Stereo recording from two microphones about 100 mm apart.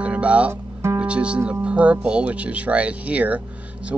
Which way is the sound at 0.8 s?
15° right (ahead or behind).